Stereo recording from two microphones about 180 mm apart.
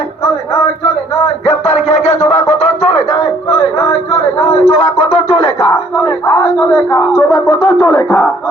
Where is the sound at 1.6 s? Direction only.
35° left (ahead or behind).